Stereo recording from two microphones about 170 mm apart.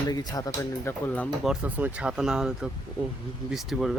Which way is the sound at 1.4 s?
5° right (ahead or behind).